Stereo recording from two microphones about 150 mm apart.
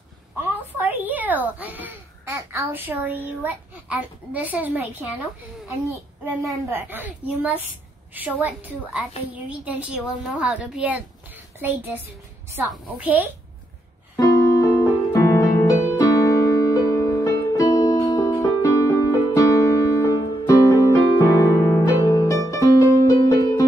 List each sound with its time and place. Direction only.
0.7 s a child's voice: 10° right (ahead or behind)
6.7 s a woman's voice: 15° right (ahead or behind)
14.1 s music: 20° left (ahead or behind)